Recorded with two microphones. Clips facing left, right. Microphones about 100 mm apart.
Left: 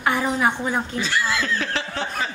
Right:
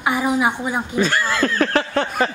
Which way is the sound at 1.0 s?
50° right (ahead or behind).